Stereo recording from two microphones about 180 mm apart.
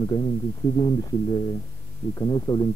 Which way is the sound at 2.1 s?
20° left (ahead or behind).